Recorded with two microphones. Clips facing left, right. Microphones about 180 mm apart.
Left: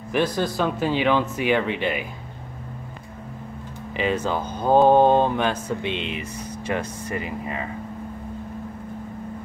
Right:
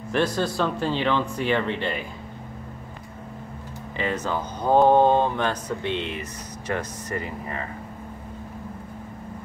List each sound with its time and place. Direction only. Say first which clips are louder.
0.4 s speech: left 1 dB; 20° left (ahead or behind)
3.9 s speech: left 3 dB; 15° left (ahead or behind)
7.2 s speech: left 2 dB; 15° left (ahead or behind)